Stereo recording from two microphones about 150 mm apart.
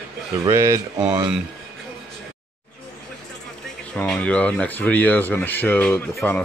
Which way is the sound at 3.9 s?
10° left (ahead or behind).